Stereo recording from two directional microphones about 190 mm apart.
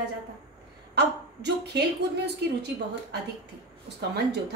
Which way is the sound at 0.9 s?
60° right (ahead or behind).